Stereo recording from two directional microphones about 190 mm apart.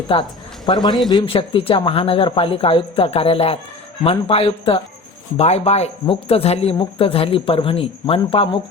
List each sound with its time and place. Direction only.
0.1 s speech: 25° left (ahead or behind)